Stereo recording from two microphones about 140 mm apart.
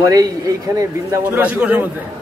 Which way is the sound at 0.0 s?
25° right (ahead or behind).